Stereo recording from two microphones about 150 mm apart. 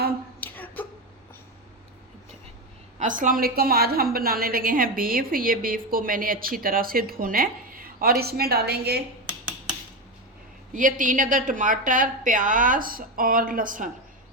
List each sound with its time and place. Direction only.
0.3 s a sound: 10° left (ahead or behind)
3.0 s a woman's voice: 60° right (ahead or behind); by 9.0 s 90° right
9.2 s dishes: 10° right (ahead or behind)
10.8 s a woman's voice: 60° right (ahead or behind)